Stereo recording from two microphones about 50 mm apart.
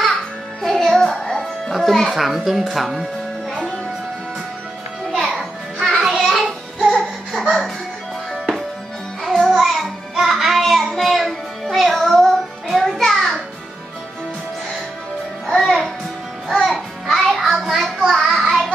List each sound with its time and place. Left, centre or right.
0.6 s music: centre
2.7 s speech: centre
5.3 s music: centre
9.2 s music: centre
15.4 s music: centre
16.6 s music: centre